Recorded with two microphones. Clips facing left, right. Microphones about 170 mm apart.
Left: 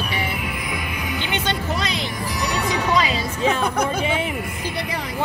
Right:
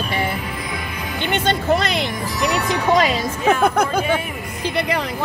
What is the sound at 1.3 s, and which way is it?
Music, 55° right (ahead or behind).